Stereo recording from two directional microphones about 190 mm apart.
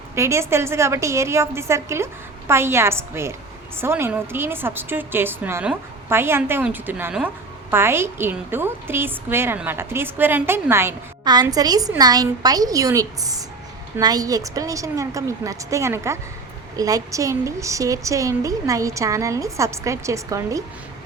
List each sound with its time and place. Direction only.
0.2 s a woman's voice: 15° right (ahead or behind)